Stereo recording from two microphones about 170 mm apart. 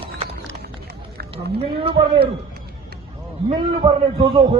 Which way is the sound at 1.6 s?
35° right (ahead or behind).